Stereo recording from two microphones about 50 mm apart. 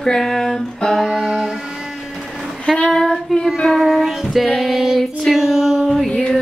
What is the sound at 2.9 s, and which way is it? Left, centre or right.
Child singing, centre.